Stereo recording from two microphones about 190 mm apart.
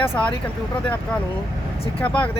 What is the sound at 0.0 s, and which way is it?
Speech, 10° left (ahead or behind).